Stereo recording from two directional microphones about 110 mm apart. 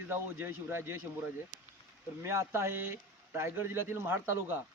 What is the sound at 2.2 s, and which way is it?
A man's voice, 25° right (ahead or behind).